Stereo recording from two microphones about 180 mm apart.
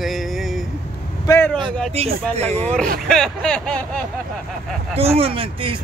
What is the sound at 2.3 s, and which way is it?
Speech, 35° right (ahead or behind).